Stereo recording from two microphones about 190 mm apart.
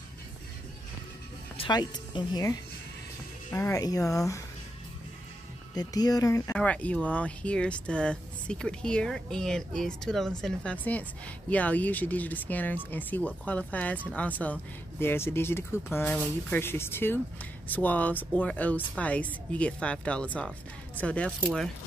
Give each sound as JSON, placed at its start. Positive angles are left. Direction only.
{"t": 1.6, "sound": "speech", "side_deg": 25}
{"t": 3.5, "sound": "speech", "side_deg": 15}
{"t": 5.8, "sound": "speech", "side_deg": 20}
{"t": 6.5, "sound": "speech", "side_deg": 5}